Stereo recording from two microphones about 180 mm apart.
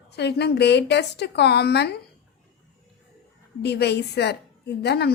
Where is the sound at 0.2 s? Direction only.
65° left (ahead or behind).